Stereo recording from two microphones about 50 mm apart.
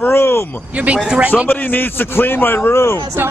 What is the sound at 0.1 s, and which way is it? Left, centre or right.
Speech, left.